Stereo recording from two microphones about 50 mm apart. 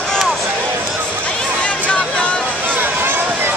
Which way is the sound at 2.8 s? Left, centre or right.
Right.